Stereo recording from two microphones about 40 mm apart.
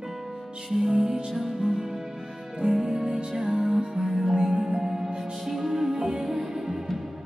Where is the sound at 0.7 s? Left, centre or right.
Centre.